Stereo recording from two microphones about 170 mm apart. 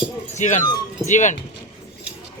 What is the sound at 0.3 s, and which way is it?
Speech, 45° left (ahead or behind).